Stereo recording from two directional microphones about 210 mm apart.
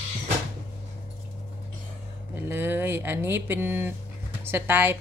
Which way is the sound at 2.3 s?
10° right (ahead or behind).